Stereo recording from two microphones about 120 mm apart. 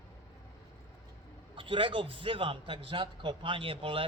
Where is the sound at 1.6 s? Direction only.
45° right (ahead or behind).